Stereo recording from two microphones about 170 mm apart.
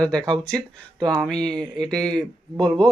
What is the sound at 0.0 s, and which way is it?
Speech, 5° left (ahead or behind).